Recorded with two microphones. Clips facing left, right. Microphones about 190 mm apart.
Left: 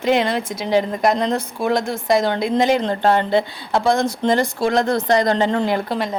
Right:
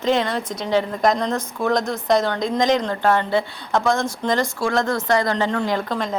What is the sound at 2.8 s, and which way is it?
Speech, 30° left (ahead or behind).